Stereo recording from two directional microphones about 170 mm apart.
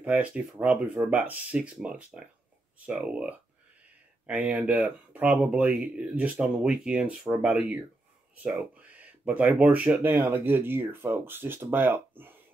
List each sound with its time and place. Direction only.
0.0 s speech: 5° right (ahead or behind)